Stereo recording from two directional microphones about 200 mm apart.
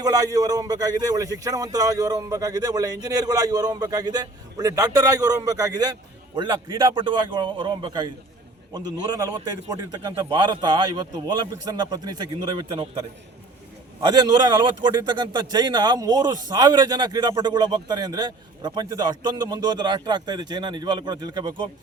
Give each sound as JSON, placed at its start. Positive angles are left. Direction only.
{"t": 0.0, "sound": "speech", "side_deg": -20}